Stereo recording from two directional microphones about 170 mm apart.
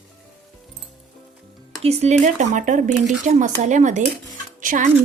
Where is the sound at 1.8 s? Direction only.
40° right (ahead or behind).